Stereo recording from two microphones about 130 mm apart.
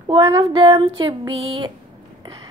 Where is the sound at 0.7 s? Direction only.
35° right (ahead or behind).